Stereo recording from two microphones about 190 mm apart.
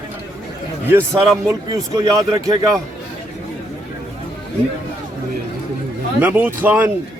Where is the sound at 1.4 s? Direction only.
20° right (ahead or behind).